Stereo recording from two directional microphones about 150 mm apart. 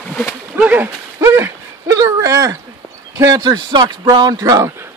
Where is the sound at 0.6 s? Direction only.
10° right (ahead or behind).